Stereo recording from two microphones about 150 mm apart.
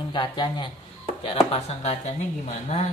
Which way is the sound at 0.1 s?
30° left (ahead or behind).